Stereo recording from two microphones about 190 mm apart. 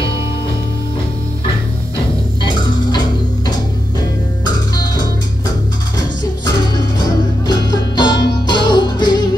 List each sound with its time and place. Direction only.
7.1 s music: 20° left (ahead or behind)